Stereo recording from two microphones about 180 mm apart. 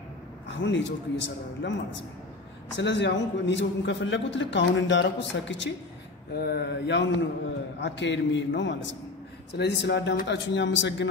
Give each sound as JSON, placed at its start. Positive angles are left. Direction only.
{"t": 0.5, "sound": "a man's voice", "side_deg": 85}
{"t": 2.7, "sound": "a man's voice", "side_deg": 80}
{"t": 6.3, "sound": "a man's voice", "side_deg": 60}
{"t": 9.5, "sound": "a man's voice", "side_deg": 70}